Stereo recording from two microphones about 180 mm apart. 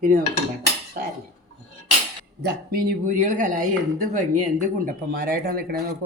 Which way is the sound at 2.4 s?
50° right (ahead or behind).